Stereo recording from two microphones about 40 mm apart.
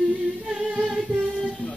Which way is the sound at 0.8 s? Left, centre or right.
Centre.